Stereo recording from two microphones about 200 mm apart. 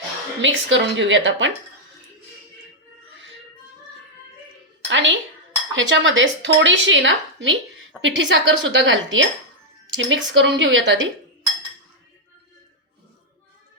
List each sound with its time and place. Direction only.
0.4 s speech: 65° right (ahead or behind)
4.9 s speech: 70° right (ahead or behind)